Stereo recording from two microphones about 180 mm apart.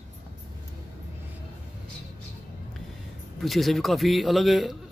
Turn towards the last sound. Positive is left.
turn(degrees=0)  # may be behind; listen again after turning